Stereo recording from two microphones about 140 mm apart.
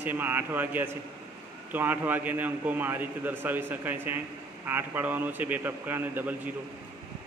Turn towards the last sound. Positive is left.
turn(degrees=-15)  # may be behind; listen again after turning